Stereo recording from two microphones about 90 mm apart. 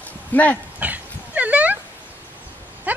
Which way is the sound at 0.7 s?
15° right (ahead or behind).